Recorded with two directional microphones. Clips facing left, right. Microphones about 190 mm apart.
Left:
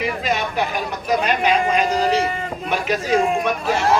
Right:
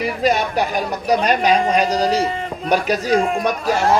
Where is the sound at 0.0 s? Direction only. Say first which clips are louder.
Right 4 dB; 40° right (ahead or behind).